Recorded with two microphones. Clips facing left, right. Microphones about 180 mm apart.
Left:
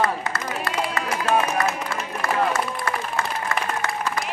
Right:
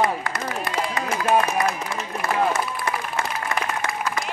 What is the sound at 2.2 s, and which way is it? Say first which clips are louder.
Run: even; 20° right (ahead or behind).